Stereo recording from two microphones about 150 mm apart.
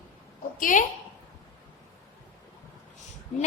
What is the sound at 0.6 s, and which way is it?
Speech, 60° left (ahead or behind).